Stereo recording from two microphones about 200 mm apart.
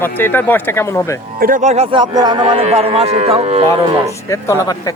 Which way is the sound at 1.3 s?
45° right (ahead or behind).